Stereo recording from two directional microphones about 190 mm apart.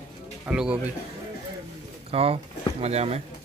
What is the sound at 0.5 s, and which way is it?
Speech, 5° right (ahead or behind).